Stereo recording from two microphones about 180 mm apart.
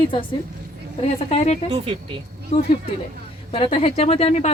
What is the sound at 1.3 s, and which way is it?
Speech, 40° left (ahead or behind).